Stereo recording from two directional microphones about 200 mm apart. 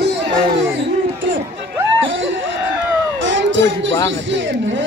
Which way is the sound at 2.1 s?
65° right (ahead or behind).